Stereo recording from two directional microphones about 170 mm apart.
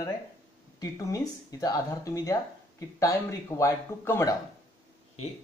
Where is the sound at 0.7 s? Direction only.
20° left (ahead or behind).